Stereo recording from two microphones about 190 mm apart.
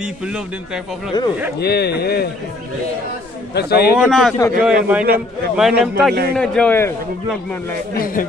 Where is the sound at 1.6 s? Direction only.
60° left (ahead or behind).